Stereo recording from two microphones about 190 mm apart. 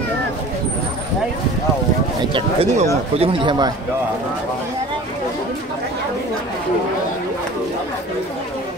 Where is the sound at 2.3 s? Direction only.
30° right (ahead or behind).